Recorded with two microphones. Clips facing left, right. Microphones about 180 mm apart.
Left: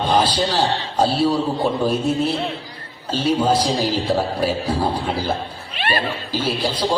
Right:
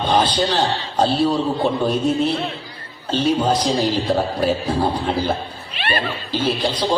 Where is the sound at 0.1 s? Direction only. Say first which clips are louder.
Right 1 dB; 10° left (ahead or behind).